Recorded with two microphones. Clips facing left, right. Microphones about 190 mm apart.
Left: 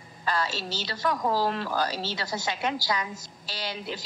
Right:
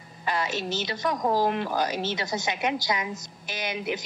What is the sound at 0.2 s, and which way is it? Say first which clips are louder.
A woman's voice: right 1 dB; 20° right (ahead or behind).